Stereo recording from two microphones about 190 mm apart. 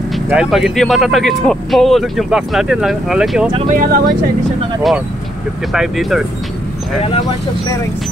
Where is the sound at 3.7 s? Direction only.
45° right (ahead or behind).